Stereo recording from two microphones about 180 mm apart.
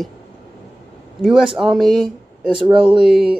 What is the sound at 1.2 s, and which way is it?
Speech, 5° right (ahead or behind).